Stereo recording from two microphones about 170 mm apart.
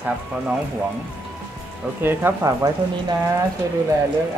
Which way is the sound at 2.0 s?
15° right (ahead or behind).